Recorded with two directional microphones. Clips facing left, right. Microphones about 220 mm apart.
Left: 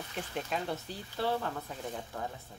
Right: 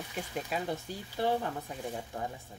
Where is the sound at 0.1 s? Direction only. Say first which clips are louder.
Even; 10° right (ahead or behind).